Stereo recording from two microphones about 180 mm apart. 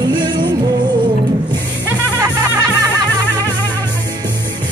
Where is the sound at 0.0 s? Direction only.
25° right (ahead or behind).